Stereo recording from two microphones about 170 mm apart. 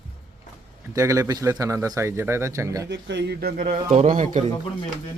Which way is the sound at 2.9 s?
90° right.